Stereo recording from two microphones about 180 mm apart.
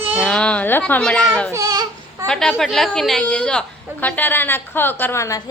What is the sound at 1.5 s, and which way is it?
Baby cry, 20° right (ahead or behind).